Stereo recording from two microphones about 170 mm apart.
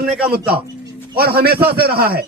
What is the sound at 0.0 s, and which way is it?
A man's voice, 65° right (ahead or behind).